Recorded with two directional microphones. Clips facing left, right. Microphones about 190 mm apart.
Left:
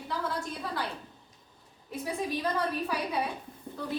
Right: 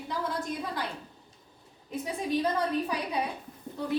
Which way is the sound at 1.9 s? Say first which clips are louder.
Right 2 dB; 20° right (ahead or behind).